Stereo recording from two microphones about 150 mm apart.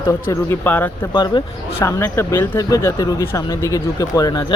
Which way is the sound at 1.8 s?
15° left (ahead or behind).